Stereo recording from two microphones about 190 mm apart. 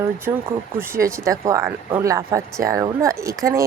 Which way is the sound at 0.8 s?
15° right (ahead or behind).